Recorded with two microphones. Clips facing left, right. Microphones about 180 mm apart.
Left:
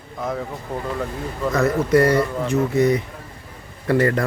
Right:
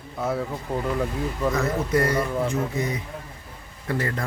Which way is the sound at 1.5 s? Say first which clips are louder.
Left 8 dB; 75° left (ahead or behind).